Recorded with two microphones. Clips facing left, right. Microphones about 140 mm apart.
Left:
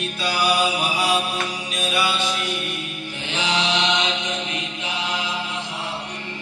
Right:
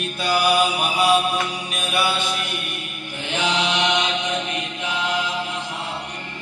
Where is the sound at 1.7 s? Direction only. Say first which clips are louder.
Even; 55° right (ahead or behind).